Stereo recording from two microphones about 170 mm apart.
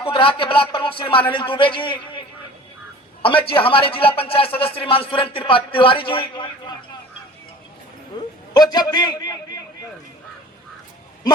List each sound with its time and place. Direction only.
0.0 s a man's voice: 30° left (ahead or behind)
3.2 s a man's voice: 30° left (ahead or behind)
8.1 s a sound: 25° left (ahead or behind)
8.5 s a man's voice: 25° left (ahead or behind)